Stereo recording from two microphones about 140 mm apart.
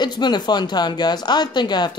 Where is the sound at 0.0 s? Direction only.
30° left (ahead or behind).